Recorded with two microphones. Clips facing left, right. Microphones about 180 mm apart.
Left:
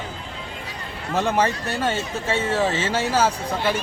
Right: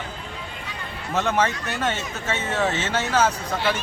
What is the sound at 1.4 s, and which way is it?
Speech, 35° left (ahead or behind).